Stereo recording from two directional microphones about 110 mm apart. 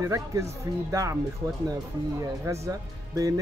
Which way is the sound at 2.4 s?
30° right (ahead or behind).